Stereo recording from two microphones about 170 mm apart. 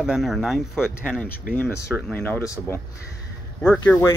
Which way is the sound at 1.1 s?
10° left (ahead or behind).